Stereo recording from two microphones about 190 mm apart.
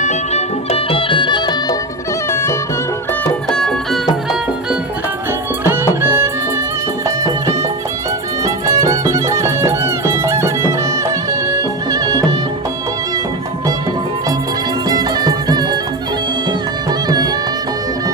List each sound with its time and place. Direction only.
0.0 s music: 35° left (ahead or behind)
2.3 s music: 15° left (ahead or behind)
3.5 s music: 5° left (ahead or behind)
5.6 s music: 10° right (ahead or behind)
14.8 s music: 20° right (ahead or behind)
17.1 s music: 20° right (ahead or behind)